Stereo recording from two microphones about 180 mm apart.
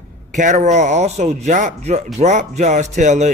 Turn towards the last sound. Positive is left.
turn(degrees=-40)  # may be behind; listen again after turning